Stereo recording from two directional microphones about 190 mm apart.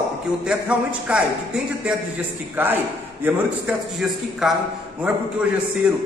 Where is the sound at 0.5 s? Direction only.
5° right (ahead or behind).